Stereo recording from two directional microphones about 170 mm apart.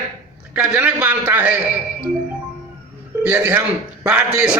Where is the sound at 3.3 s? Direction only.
10° right (ahead or behind).